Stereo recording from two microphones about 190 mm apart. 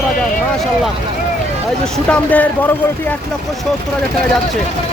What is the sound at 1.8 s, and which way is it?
Speech, 5° left (ahead or behind).